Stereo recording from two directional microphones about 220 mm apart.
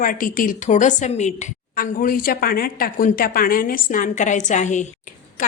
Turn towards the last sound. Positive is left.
turn(degrees=35)  # may be behind; listen again after turning